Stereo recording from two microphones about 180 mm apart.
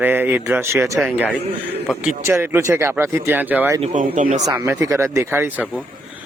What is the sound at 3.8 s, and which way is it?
Speech, 45° right (ahead or behind).